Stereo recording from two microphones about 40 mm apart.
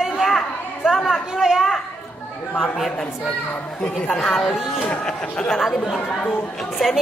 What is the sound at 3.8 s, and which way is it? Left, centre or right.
Speech, left.